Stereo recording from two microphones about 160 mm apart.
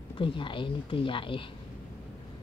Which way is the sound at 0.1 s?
30° left (ahead or behind).